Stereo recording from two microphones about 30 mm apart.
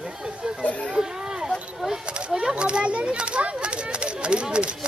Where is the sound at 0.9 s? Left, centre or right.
Right.